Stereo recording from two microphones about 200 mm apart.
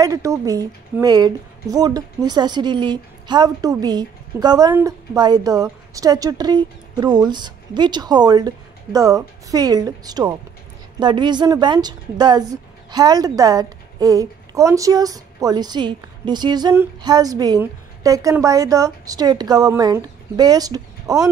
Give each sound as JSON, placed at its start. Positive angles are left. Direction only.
{"t": 0.0, "sound": "a woman's voice", "side_deg": -15}